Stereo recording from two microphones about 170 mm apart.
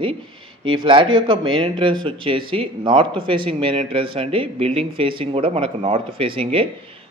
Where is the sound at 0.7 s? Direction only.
30° right (ahead or behind).